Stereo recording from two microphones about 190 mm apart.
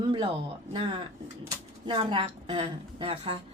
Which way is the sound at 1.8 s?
25° right (ahead or behind).